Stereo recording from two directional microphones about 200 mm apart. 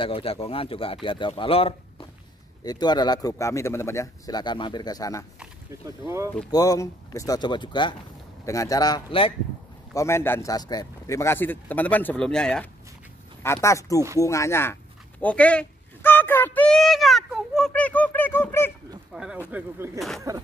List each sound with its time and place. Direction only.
0.0 s speech: 30° left (ahead or behind)
5.7 s speech: 15° right (ahead or behind)
6.5 s speech: 15° left (ahead or behind)
9.9 s speech: 15° left (ahead or behind)
19.1 s speech: 5° right (ahead or behind)